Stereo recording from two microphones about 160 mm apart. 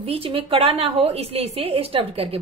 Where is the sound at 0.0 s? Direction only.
35° right (ahead or behind).